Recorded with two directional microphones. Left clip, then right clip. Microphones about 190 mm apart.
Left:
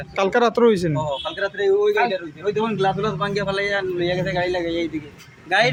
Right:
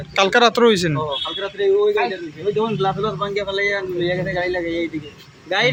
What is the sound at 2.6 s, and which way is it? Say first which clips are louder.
A man's voice: right 1 dB; 30° left (ahead or behind).